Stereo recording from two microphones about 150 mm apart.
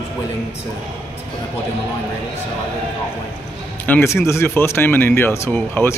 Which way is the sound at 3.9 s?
15° left (ahead or behind).